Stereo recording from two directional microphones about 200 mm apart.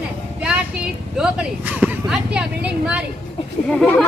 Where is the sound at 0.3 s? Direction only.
5° right (ahead or behind).